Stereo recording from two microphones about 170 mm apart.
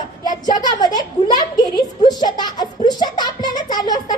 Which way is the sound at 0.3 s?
25° left (ahead or behind).